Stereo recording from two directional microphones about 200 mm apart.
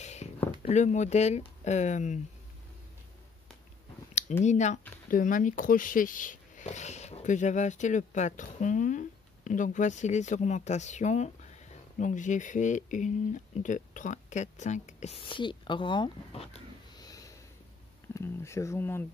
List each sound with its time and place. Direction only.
0.0 s a sound: 35° left (ahead or behind)
0.6 s speech: 35° left (ahead or behind)
4.5 s speech: 35° left (ahead or behind)
17.0 s sniff: 15° left (ahead or behind)
18.1 s speech: 15° left (ahead or behind)